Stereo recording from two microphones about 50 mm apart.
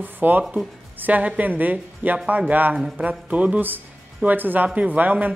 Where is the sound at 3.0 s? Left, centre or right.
Right.